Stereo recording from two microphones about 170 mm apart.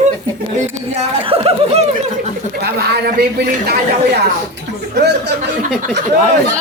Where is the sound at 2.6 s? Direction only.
70° right (ahead or behind).